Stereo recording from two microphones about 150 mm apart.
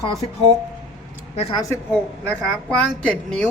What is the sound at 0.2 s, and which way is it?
Speech, 40° left (ahead or behind).